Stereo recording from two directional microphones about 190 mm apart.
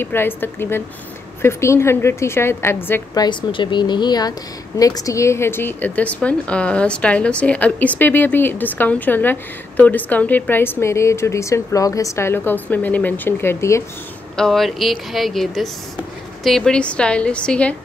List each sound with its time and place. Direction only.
0.0 s a woman's voice: 10° left (ahead or behind)
3.3 s a woman's voice: 25° left (ahead or behind)
14.3 s a woman's voice: centre (ahead or behind)